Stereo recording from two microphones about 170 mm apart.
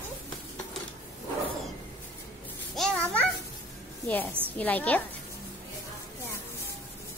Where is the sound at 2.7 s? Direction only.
5° left (ahead or behind).